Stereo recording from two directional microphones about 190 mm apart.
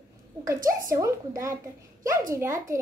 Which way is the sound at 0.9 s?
15° right (ahead or behind).